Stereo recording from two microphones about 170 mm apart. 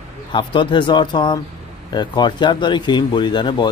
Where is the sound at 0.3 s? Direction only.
30° left (ahead or behind).